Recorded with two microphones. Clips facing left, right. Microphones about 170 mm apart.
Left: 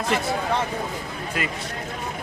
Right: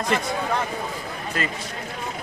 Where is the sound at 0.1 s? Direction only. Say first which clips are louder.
Even; 5° left (ahead or behind).